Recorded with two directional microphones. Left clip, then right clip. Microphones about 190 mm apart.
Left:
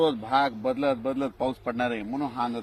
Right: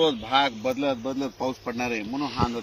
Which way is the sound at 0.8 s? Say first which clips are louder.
Left 2 dB; 5° right (ahead or behind).